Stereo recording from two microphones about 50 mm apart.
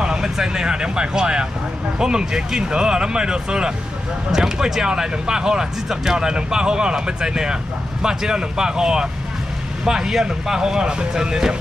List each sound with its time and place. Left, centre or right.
0.0 s speech: centre